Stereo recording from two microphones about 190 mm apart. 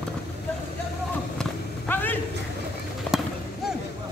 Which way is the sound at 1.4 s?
10° left (ahead or behind).